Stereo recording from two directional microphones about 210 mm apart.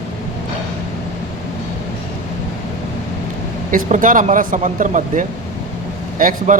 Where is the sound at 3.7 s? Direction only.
40° right (ahead or behind).